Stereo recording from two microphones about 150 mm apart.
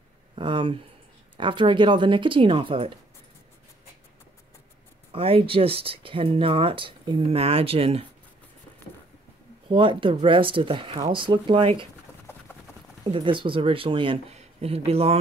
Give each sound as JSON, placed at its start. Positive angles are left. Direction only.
{"t": 0.4, "sound": "speech", "side_deg": -35}
{"t": 5.1, "sound": "speech", "side_deg": -40}
{"t": 9.7, "sound": "speech", "side_deg": -35}
{"t": 12.3, "sound": "vehicle", "side_deg": 15}
{"t": 13.1, "sound": "speech", "side_deg": -35}